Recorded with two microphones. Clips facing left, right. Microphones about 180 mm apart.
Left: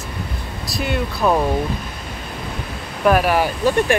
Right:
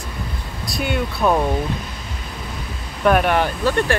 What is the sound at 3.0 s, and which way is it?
Speech, 5° left (ahead or behind).